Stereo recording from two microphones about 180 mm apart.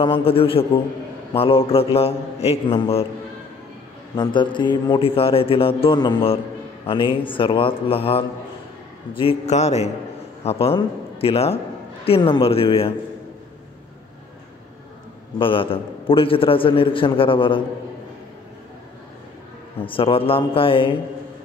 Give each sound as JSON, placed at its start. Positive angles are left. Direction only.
{"t": 0.0, "sound": "speech", "side_deg": 30}
{"t": 4.1, "sound": "a man's voice", "side_deg": 25}
{"t": 15.3, "sound": "a man's voice", "side_deg": 30}
{"t": 19.9, "sound": "speech", "side_deg": 30}